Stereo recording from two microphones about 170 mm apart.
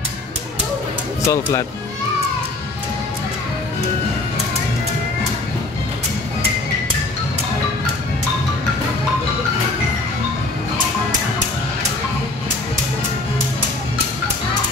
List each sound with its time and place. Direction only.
1.2 s speech: 15° left (ahead or behind)